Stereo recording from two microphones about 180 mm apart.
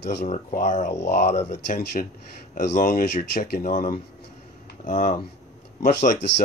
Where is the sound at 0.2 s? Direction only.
45° left (ahead or behind).